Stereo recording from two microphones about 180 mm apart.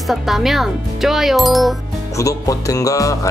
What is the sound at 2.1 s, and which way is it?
Music, 20° left (ahead or behind).